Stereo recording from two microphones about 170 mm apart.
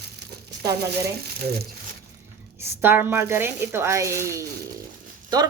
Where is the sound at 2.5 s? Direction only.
15° right (ahead or behind).